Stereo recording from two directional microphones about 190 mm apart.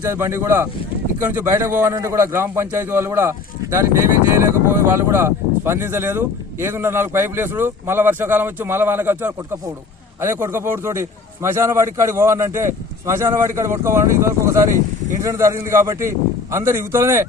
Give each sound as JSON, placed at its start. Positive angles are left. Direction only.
{"t": 0.0, "sound": "speech", "side_deg": -15}